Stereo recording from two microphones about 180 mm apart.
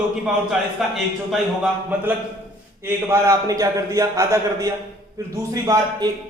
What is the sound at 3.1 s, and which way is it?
A man's voice, 15° right (ahead or behind).